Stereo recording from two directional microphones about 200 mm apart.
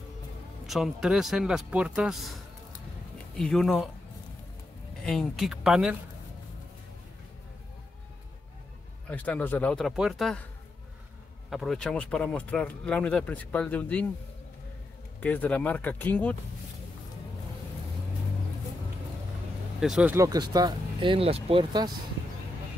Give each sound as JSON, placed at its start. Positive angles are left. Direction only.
{"t": 0.7, "sound": "speech", "side_deg": 0}
{"t": 5.0, "sound": "speech", "side_deg": 5}
{"t": 9.1, "sound": "speech", "side_deg": 5}
{"t": 11.5, "sound": "speech", "side_deg": 0}
{"t": 15.1, "sound": "speech", "side_deg": 10}
{"t": 19.8, "sound": "speech", "side_deg": -5}
{"t": 20.2, "sound": "speech", "side_deg": -20}